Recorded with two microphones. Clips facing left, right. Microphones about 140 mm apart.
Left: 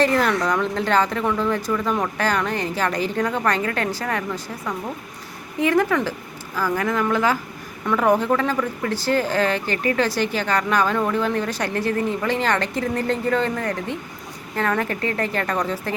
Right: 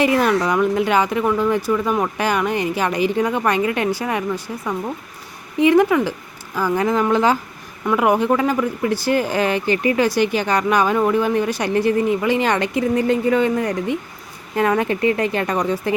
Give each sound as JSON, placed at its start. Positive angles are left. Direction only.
{"t": 0.0, "sound": "a woman's voice", "side_deg": -15}
{"t": 7.9, "sound": "speech", "side_deg": -10}